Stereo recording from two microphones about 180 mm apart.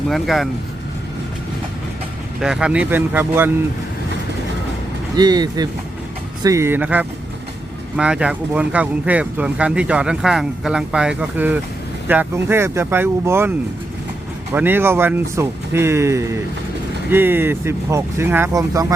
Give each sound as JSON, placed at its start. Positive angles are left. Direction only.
{"t": 0.1, "sound": "speech", "side_deg": 0}
{"t": 2.4, "sound": "speech", "side_deg": -5}
{"t": 5.1, "sound": "speech", "side_deg": -20}
{"t": 14.5, "sound": "speech", "side_deg": -10}